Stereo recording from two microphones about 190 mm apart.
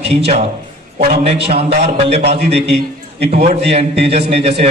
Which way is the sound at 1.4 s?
30° right (ahead or behind).